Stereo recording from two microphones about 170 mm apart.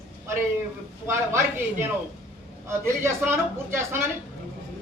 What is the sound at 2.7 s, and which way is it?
A man's voice, 15° right (ahead or behind).